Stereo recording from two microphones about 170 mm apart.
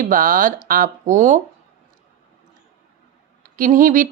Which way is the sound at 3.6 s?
50° right (ahead or behind).